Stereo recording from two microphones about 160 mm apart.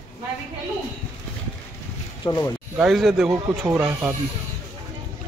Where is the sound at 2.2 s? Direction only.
20° left (ahead or behind).